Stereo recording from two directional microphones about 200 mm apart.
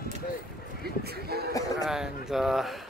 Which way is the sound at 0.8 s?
50° right (ahead or behind).